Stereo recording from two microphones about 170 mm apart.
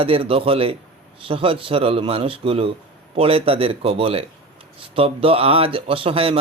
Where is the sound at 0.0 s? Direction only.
35° right (ahead or behind).